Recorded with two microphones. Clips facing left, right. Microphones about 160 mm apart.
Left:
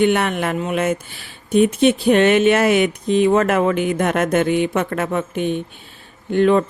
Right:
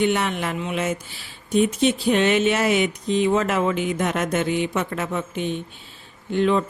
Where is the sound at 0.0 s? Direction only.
55° left (ahead or behind).